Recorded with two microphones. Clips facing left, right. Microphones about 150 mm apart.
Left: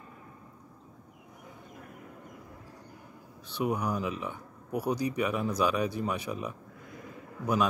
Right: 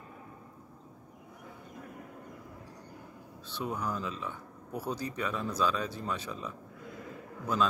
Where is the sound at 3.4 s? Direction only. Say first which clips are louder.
Left 5 dB; 15° left (ahead or behind).